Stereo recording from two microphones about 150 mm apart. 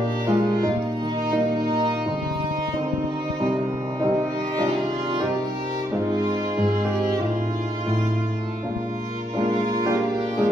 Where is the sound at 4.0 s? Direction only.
30° right (ahead or behind).